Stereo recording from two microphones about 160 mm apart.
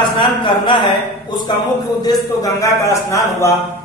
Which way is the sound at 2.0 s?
20° left (ahead or behind).